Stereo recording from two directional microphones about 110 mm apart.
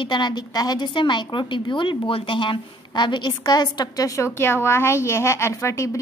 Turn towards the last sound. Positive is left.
turn(degrees=25)  # may be behind; listen again after turning